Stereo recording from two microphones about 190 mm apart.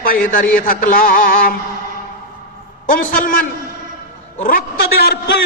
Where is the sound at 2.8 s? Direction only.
45° left (ahead or behind).